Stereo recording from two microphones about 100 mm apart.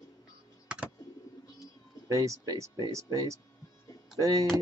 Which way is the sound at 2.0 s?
30° right (ahead or behind).